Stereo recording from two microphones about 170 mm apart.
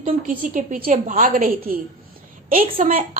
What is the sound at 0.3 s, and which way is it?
A woman's voice, 50° right (ahead or behind).